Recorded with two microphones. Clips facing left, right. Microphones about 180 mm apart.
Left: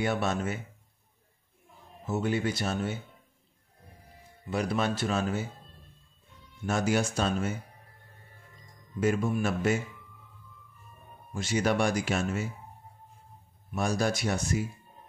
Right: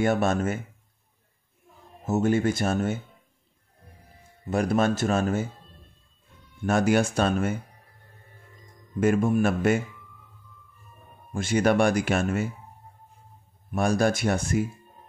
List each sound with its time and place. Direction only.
0.0 s speech: 50° right (ahead or behind)
2.0 s speech: 45° right (ahead or behind)
4.5 s speech: 45° right (ahead or behind)
6.6 s speech: 55° right (ahead or behind)
9.0 s speech: 50° right (ahead or behind)
11.3 s speech: 55° right (ahead or behind)
13.7 s speech: 55° right (ahead or behind)